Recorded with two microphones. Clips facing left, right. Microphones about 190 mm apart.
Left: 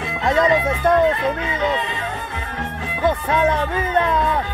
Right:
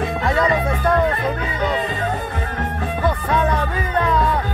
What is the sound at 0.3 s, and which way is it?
Music, 20° left (ahead or behind).